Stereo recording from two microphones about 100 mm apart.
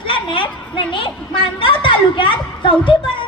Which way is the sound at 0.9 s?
60° left (ahead or behind).